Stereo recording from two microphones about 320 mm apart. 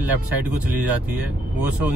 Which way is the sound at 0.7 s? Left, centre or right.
Centre.